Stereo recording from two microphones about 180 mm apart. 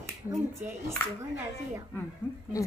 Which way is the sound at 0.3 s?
15° right (ahead or behind).